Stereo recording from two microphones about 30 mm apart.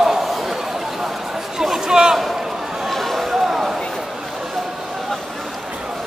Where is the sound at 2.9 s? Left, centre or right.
Centre.